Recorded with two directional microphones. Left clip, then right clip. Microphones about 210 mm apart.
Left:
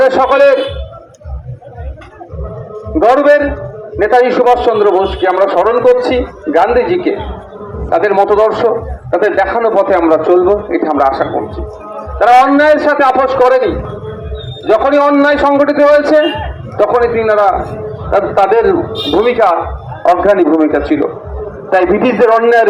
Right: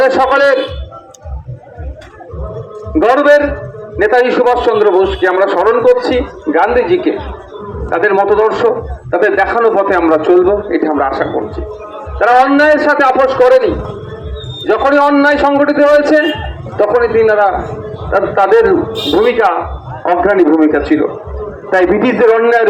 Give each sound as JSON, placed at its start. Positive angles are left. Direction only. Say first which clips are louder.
{"t": 0.0, "sound": "a man's voice", "louder": "left 1 dB", "side_deg": 25}
{"t": 3.0, "sound": "a man's voice", "louder": "even", "side_deg": 25}
{"t": 14.7, "sound": "a man's voice", "louder": "left 1 dB", "side_deg": 25}